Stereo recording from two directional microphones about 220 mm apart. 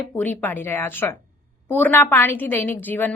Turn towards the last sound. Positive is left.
turn(degrees=10)  # may be behind; listen again after turning